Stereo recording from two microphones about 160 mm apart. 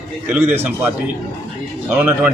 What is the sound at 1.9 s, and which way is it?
Speech, 10° right (ahead or behind).